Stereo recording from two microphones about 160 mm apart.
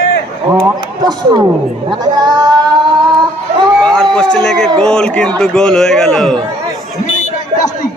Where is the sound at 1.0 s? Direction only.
25° right (ahead or behind).